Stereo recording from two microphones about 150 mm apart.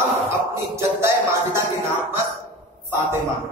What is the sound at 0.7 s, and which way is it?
Music, 20° right (ahead or behind).